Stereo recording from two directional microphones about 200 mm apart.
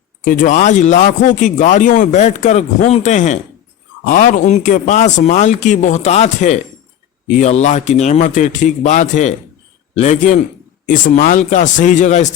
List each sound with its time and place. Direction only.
0.3 s speech: 40° left (ahead or behind)